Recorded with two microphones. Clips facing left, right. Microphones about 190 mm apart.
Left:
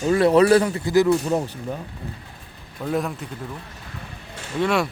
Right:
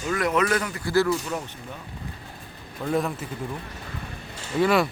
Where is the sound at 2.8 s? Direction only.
Centre (ahead or behind).